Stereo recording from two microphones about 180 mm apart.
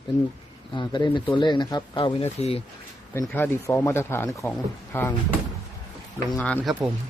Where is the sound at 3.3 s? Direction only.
10° left (ahead or behind).